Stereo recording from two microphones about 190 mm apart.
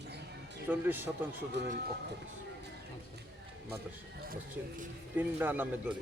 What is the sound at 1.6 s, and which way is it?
Speech, 65° right (ahead or behind).